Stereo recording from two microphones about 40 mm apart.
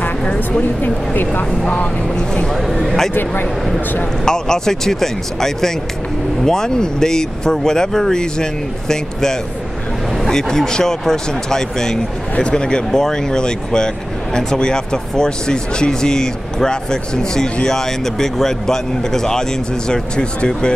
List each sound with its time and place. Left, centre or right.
0.2 s a woman's voice: left
1.1 s speech: left
2.1 s speech: centre
2.5 s speech: centre
4.2 s speech: centre